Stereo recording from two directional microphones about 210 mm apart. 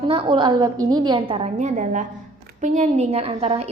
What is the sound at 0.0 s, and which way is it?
A woman's voice, 25° right (ahead or behind).